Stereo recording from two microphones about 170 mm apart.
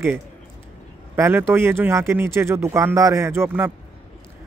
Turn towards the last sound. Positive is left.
turn(degrees=-15)  # may be behind; listen again after turning